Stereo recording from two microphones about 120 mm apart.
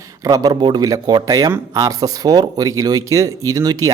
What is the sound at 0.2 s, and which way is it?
Speech, 30° right (ahead or behind).